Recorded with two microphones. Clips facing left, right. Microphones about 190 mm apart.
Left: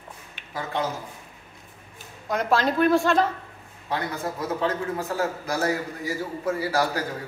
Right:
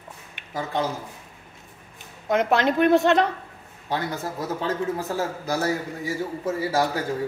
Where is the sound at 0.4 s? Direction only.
15° right (ahead or behind).